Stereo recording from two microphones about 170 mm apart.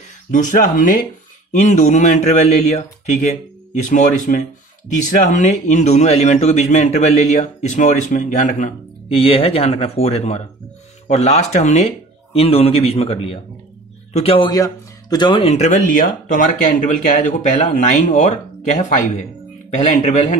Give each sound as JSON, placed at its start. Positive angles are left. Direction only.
{"t": 0.3, "sound": "a man's voice", "side_deg": 50}
{"t": 9.1, "sound": "speech", "side_deg": 35}
{"t": 15.5, "sound": "a man's voice", "side_deg": 45}